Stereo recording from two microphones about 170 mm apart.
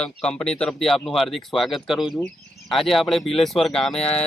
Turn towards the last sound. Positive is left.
turn(degrees=0)  # may be behind; listen again after turning